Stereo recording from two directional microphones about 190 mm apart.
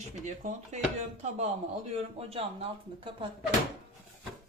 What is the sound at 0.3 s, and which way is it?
Speech, 40° right (ahead or behind).